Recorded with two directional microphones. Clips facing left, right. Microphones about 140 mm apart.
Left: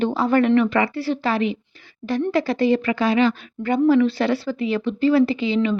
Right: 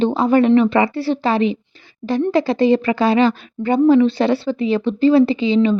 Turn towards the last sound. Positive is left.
turn(degrees=-25)  # may be behind; listen again after turning